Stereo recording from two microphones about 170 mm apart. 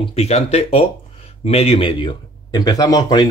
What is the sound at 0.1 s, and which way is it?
Speech, 35° left (ahead or behind).